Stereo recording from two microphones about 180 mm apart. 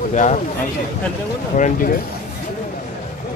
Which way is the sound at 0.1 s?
40° left (ahead or behind).